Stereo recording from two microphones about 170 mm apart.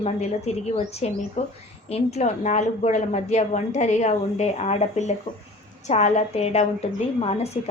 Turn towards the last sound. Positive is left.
turn(degrees=35)  # may be behind; listen again after turning